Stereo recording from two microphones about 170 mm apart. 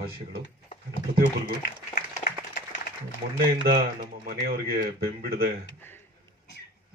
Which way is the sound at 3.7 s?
60° right (ahead or behind).